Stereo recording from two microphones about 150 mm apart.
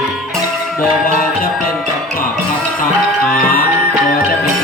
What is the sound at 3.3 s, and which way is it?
Music, 80° left.